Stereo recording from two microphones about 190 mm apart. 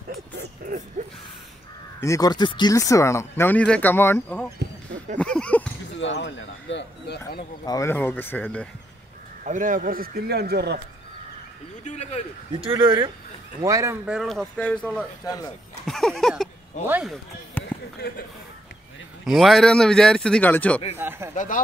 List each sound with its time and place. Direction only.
0.4 s a sound: 45° right (ahead or behind)
2.0 s speech: 15° left (ahead or behind)
5.2 s a sound: 5° left (ahead or behind)
5.9 s speech: 70° left (ahead or behind)
7.6 s speech: 15° left (ahead or behind)
9.4 s speech: 45° right (ahead or behind); by 10.8 s 60° right (ahead or behind)
11.8 s speech: 35° left (ahead or behind)
12.8 s speech: 25° right (ahead or behind)
14.0 s speech: centre (ahead or behind)
16.8 s speech: 10° right (ahead or behind)
17.6 s basketball bounce: 5° left (ahead or behind)
17.9 s speech: 55° left (ahead or behind)
19.2 s speech: centre (ahead or behind)
20.9 s speech: 10° right (ahead or behind)